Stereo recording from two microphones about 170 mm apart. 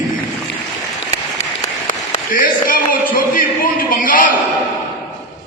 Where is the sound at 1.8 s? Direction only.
55° left (ahead or behind).